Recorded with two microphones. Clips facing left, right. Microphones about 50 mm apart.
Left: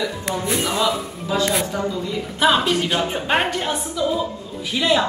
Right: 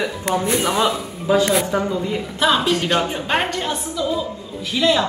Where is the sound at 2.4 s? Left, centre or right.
Centre.